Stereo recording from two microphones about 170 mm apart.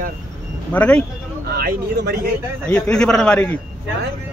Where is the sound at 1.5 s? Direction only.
65° right (ahead or behind).